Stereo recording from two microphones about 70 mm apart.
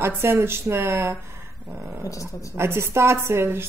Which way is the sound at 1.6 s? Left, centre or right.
Right.